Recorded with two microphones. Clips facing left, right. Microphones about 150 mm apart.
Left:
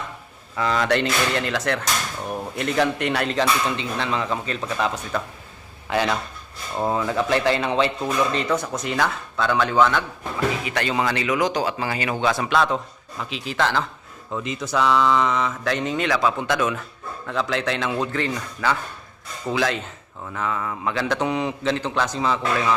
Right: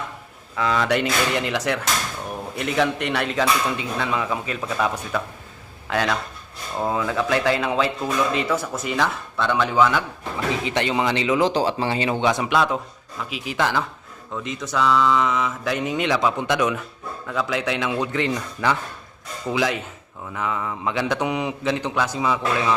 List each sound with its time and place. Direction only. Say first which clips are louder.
0.5 s a man's voice: even; centre (ahead or behind)
2.6 s speech: even; centre (ahead or behind)
5.9 s speech: left 1 dB; 5° left (ahead or behind)
10.6 s speech: right 1 dB; 25° right (ahead or behind)
12.2 s a man's voice: left 1 dB; 15° right (ahead or behind)
14.3 s a man's voice: left 1 dB; centre (ahead or behind)